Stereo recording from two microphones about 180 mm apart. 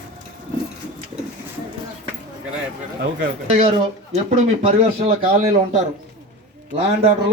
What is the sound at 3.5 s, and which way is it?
Speech, 35° right (ahead or behind).